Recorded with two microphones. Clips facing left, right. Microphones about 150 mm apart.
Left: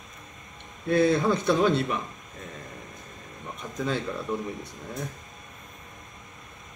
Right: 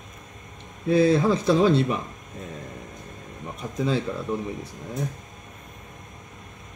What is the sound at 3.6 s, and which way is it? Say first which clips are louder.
Speech: right 6 dB; 10° right (ahead or behind).